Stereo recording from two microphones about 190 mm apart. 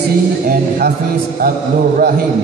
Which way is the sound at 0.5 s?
50° right (ahead or behind).